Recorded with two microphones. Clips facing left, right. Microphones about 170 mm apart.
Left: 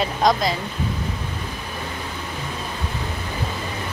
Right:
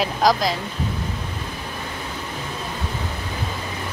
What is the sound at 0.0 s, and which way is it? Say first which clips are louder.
Speech: even; centre (ahead or behind).